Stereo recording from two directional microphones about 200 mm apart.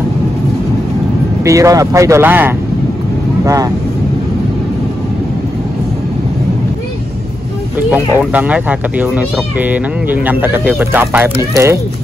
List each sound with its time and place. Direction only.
1.4 s speech: 15° right (ahead or behind)
7.9 s speech: 5° right (ahead or behind)